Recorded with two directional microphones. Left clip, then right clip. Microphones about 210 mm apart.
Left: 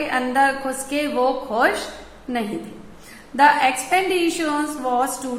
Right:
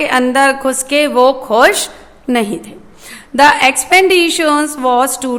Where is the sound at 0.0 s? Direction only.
45° right (ahead or behind).